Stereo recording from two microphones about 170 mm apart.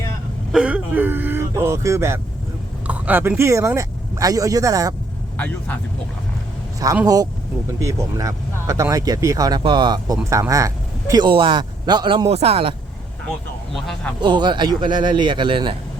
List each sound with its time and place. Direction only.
0.5 s speech: 5° right (ahead or behind)
5.4 s speech: 10° left (ahead or behind)
6.8 s speech: 20° right (ahead or behind)
14.2 s speech: 25° right (ahead or behind)